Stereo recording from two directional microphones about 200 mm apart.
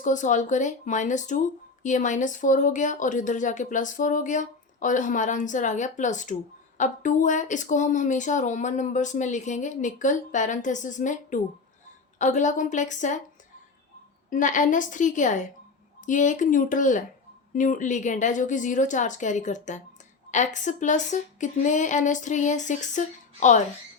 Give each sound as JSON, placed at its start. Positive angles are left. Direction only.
{"t": 0.0, "sound": "speech", "side_deg": 40}
{"t": 14.3, "sound": "speech", "side_deg": 40}